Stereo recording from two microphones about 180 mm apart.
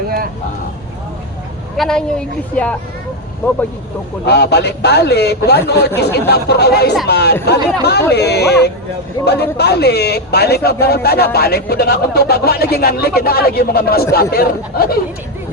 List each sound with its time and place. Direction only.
1.7 s speech: centre (ahead or behind)
4.3 s speech: 65° left (ahead or behind)